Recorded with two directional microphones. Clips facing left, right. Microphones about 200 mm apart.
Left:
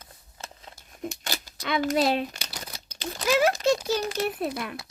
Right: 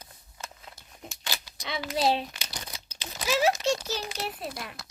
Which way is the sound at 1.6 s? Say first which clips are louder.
Left 4 dB; 50° left (ahead or behind).